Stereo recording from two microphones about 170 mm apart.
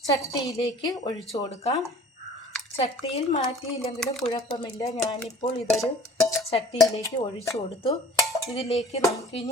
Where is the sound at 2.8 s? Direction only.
35° left (ahead or behind).